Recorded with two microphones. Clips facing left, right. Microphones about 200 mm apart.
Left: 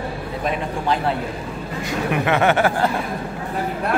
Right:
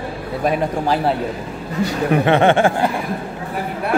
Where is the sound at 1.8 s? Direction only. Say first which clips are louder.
Right 4 dB; 30° right (ahead or behind).